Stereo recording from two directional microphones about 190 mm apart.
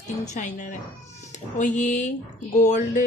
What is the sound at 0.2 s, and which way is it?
Speech, 40° left (ahead or behind).